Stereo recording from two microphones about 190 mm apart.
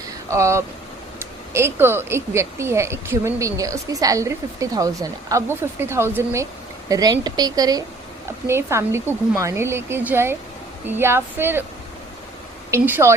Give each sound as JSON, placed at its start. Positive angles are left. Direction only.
{"t": 0.3, "sound": "speech", "side_deg": -15}
{"t": 12.7, "sound": "speech", "side_deg": -10}